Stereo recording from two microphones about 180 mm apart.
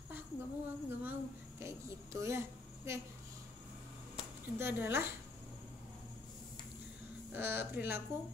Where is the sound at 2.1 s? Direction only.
15° right (ahead or behind).